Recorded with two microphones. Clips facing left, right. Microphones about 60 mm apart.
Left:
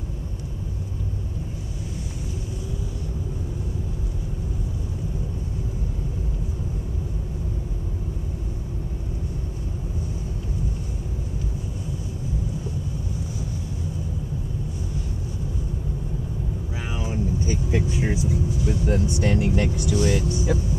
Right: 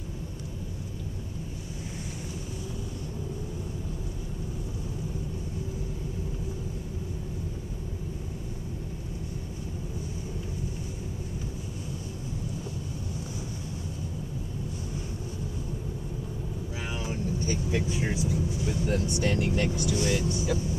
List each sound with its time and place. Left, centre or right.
16.9 s vehicle: centre
20.0 s speech: left